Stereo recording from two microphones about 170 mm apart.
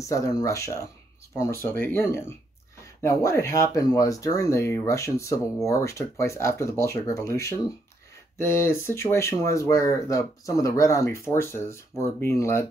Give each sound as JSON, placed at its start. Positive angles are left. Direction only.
{"t": 0.0, "sound": "speech", "side_deg": 20}